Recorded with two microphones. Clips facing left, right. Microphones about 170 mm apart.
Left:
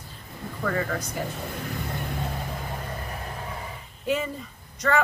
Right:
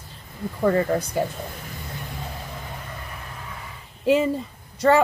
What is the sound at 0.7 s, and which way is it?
Speech, 30° right (ahead or behind).